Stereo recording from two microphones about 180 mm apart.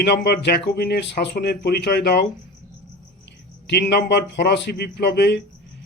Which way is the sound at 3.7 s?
70° left (ahead or behind).